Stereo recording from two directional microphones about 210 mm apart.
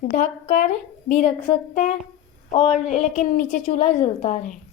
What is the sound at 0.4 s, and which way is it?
A woman's voice, 35° left (ahead or behind).